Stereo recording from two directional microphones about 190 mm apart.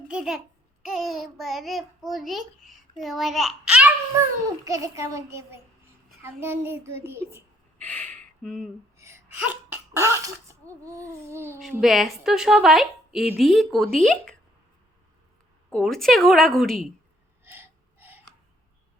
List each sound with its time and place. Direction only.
0.1 s a child's voice: 5° right (ahead or behind)
4.6 s child singing: 15° right (ahead or behind)
7.8 s a sound: 5° left (ahead or behind)
9.0 s laughter: 15° right (ahead or behind)
11.7 s a child's voice: centre (ahead or behind)
15.7 s a child's voice: centre (ahead or behind)
17.4 s gasp: 10° right (ahead or behind)